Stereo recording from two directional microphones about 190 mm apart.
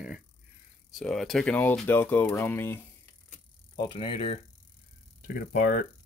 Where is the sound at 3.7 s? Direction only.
25° left (ahead or behind).